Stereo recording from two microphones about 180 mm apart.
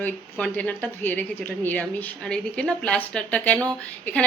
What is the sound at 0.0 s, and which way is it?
A woman's voice, 10° left (ahead or behind).